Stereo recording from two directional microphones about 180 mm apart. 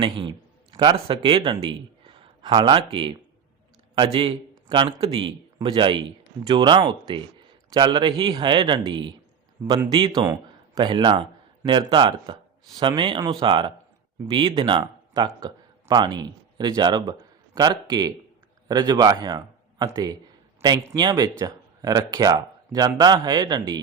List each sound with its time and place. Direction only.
0.0 s a man's voice: 25° right (ahead or behind)